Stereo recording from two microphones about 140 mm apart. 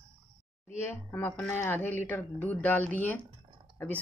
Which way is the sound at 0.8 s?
15° left (ahead or behind).